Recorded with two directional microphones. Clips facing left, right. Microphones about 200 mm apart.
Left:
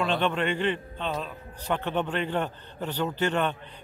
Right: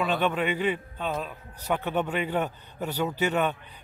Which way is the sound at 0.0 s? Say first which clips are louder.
Even; 5° right (ahead or behind).